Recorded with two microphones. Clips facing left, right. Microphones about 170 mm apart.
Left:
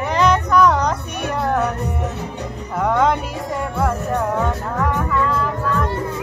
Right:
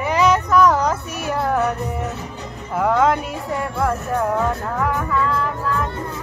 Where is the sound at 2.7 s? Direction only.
5° right (ahead or behind).